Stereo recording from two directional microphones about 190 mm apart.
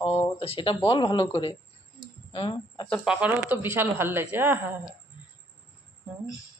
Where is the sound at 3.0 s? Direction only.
5° right (ahead or behind).